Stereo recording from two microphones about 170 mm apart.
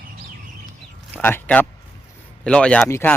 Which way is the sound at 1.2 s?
10° left (ahead or behind).